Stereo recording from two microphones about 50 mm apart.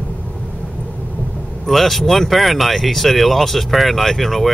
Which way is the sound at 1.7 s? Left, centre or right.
Centre.